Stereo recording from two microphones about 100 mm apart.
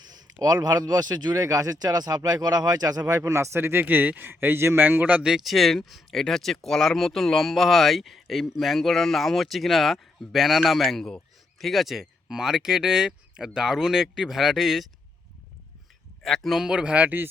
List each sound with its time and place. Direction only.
0.0 s speech: 45° right (ahead or behind); by 14.8 s centre (ahead or behind)
16.2 s a man's voice: centre (ahead or behind); by 17.2 s 15° right (ahead or behind)